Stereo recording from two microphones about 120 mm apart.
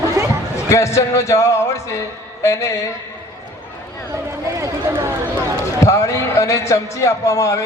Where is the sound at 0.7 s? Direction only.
25° left (ahead or behind).